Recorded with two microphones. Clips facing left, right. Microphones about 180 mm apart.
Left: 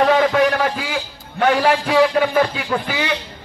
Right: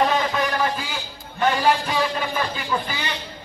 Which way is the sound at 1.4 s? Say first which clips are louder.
Left 4 dB; 70° left (ahead or behind).